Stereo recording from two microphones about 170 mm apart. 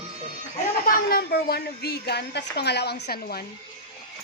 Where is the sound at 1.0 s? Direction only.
60° left (ahead or behind).